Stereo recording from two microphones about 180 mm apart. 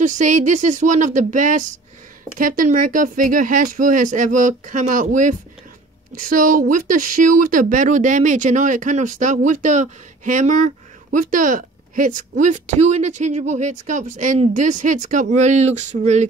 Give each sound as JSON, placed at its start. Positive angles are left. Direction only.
{"t": 0.0, "sound": "speech", "side_deg": -45}